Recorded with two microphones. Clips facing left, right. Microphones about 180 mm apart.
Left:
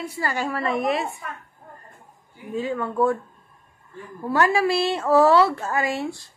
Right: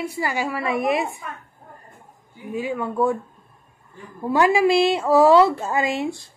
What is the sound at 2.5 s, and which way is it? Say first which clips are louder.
Speech: even; 10° right (ahead or behind).